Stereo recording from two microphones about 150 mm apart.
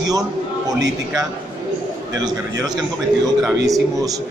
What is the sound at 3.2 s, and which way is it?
Speech, 25° right (ahead or behind).